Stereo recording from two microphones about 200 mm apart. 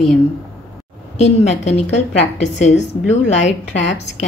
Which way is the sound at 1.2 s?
35° left (ahead or behind).